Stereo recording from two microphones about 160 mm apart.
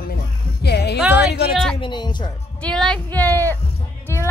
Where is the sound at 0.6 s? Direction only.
90° left.